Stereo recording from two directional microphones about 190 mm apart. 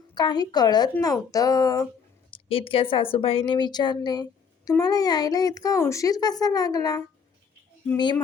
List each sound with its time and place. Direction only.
0.1 s speech: 20° left (ahead or behind)
2.3 s a woman's voice: 30° left (ahead or behind)